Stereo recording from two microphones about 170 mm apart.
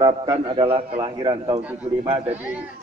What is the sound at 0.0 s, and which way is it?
A man's voice, 30° right (ahead or behind).